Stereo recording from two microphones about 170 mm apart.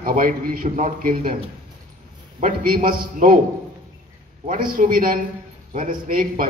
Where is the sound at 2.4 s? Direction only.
55° right (ahead or behind).